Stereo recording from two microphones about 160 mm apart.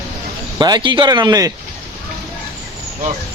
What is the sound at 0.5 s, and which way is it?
Speech, 25° right (ahead or behind).